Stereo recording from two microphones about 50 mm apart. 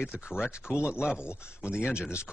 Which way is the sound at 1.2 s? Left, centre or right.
Left.